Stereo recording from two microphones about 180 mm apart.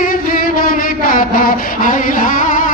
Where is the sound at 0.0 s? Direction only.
50° left (ahead or behind).